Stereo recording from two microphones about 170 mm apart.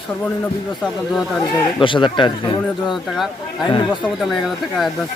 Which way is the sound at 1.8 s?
30° left (ahead or behind).